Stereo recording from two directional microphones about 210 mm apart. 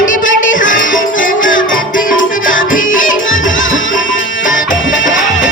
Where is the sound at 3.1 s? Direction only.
65° left (ahead or behind).